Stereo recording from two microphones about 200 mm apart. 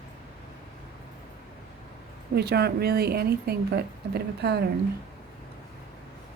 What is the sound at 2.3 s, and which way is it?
A woman's voice, 55° right (ahead or behind).